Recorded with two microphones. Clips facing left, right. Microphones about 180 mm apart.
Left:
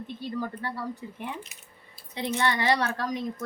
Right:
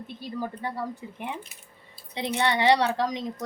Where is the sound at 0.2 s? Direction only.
10° right (ahead or behind).